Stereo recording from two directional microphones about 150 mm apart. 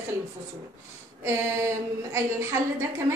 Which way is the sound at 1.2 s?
20° right (ahead or behind).